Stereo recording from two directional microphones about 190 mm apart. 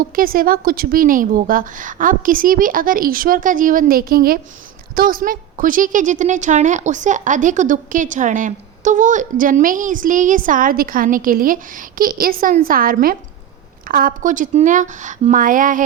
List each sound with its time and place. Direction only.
0.0 s a woman's voice: 50° right (ahead or behind)